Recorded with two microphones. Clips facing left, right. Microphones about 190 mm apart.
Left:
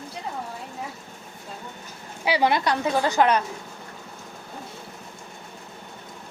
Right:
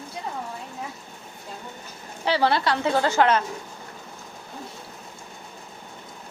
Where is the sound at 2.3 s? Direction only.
15° left (ahead or behind).